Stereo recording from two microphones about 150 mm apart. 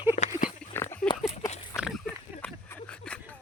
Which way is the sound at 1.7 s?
5° right (ahead or behind).